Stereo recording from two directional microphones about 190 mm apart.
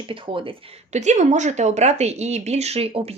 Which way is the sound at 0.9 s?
40° right (ahead or behind).